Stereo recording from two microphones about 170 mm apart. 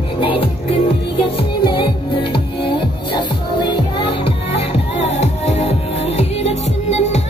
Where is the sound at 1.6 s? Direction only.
30° left (ahead or behind).